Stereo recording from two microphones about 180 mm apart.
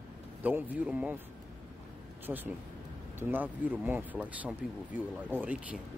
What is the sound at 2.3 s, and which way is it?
Speech, 5° right (ahead or behind).